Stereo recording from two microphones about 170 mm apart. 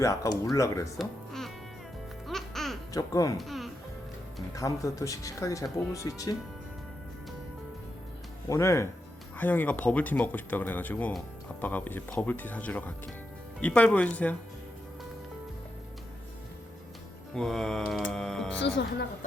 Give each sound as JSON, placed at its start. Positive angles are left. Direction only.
{"t": 0.0, "sound": "speech", "side_deg": 20}
{"t": 0.9, "sound": "music", "side_deg": 0}
{"t": 2.9, "sound": "speech", "side_deg": 20}
{"t": 3.3, "sound": "music", "side_deg": 0}
{"t": 4.5, "sound": "speech", "side_deg": 20}
{"t": 8.4, "sound": "speech", "side_deg": 20}
{"t": 17.3, "sound": "music", "side_deg": 5}
{"t": 18.6, "sound": "speech", "side_deg": 90}